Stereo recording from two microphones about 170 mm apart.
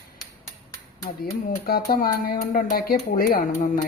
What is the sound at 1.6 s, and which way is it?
Speech, 65° left (ahead or behind).